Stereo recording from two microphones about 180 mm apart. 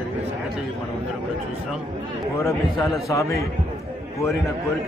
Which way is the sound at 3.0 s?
15° left (ahead or behind).